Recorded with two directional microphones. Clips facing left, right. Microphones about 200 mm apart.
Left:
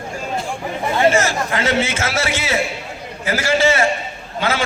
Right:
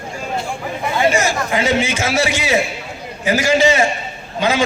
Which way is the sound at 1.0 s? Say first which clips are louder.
Left 1 dB; 15° right (ahead or behind).